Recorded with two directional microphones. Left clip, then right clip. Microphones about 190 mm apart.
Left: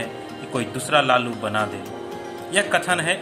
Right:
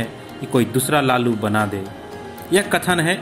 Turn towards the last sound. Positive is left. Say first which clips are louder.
# right 2 dB
turn(degrees=-20)  # may be behind; listen again after turning